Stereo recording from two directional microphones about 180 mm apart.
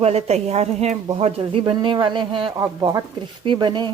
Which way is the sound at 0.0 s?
35° right (ahead or behind).